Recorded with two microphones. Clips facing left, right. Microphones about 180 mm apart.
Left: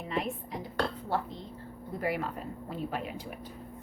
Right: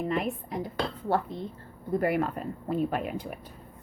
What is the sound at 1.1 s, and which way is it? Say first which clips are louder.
A woman's voice: right 5 dB; 45° right (ahead or behind).